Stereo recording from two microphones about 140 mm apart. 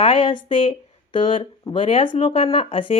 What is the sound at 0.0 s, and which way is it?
Speech, 40° left (ahead or behind).